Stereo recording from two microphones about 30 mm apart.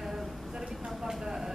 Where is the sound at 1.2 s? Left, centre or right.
Centre.